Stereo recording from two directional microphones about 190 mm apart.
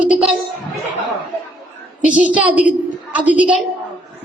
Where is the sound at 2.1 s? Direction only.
5° right (ahead or behind).